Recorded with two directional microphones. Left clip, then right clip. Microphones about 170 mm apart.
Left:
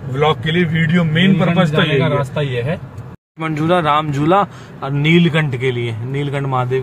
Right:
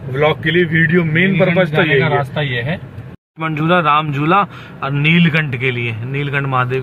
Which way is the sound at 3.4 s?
15° left (ahead or behind).